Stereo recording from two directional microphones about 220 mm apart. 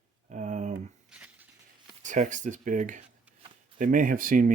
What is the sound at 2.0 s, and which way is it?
Speech, 35° right (ahead or behind).